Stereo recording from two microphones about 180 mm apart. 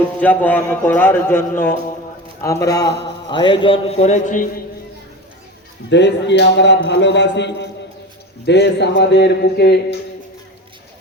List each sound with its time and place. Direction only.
0.2 s a man's voice: 10° left (ahead or behind); by 4.6 s 45° left (ahead or behind)
5.9 s a man's voice: 75° left (ahead or behind)